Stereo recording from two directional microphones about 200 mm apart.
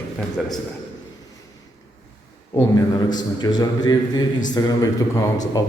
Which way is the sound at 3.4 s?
20° left (ahead or behind).